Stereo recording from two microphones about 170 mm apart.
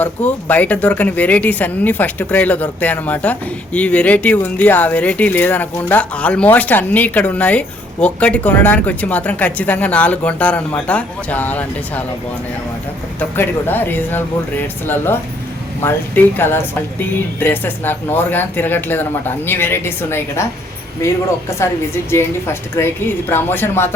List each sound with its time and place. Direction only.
0.0 s a woman's voice: 10° left (ahead or behind)
13.1 s a woman's voice: 10° left (ahead or behind)
21.6 s a woman's voice: 15° left (ahead or behind)